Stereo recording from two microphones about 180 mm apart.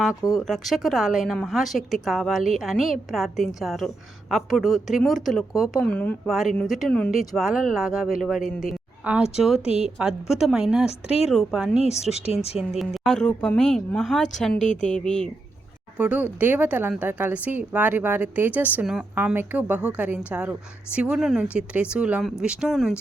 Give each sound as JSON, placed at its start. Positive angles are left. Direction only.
{"t": 0.3, "sound": "speech", "side_deg": 0}
{"t": 11.8, "sound": "speech", "side_deg": 35}
{"t": 12.5, "sound": "speech", "side_deg": 0}
{"t": 14.6, "sound": "a woman's voice", "side_deg": 40}
{"t": 14.8, "sound": "speech", "side_deg": 5}
{"t": 16.0, "sound": "a woman's voice", "side_deg": -5}